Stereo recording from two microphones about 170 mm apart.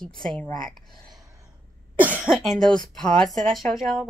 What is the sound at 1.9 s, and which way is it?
Speech, 10° right (ahead or behind).